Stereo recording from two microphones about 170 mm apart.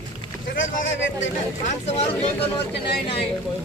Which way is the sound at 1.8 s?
40° left (ahead or behind).